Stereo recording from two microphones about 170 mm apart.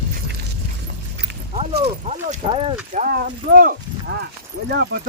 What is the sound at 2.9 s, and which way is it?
Speech, 50° right (ahead or behind).